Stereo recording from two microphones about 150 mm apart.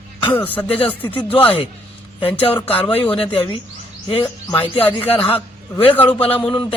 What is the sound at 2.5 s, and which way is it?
Speech, 10° left (ahead or behind).